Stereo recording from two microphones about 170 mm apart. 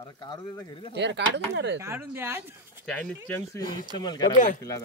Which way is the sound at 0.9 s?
90° right.